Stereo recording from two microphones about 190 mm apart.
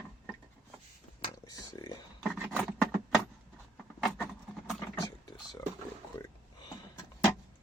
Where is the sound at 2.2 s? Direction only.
5° right (ahead or behind).